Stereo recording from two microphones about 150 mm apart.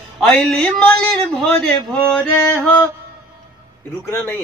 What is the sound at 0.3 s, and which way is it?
Speech, 5° left (ahead or behind).